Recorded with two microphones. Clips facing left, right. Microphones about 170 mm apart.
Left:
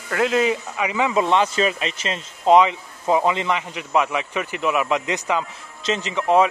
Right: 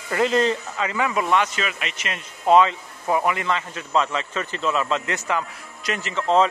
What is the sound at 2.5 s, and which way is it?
A man's voice, 20° left (ahead or behind).